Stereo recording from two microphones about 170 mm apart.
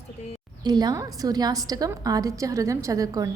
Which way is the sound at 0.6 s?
25° right (ahead or behind).